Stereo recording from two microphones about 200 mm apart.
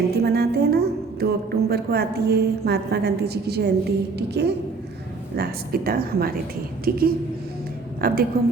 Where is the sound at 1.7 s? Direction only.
50° right (ahead or behind).